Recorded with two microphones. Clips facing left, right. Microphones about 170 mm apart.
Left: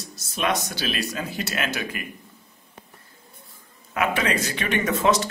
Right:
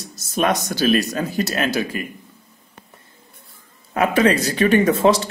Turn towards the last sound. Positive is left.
turn(degrees=-30)  # may be behind; listen again after turning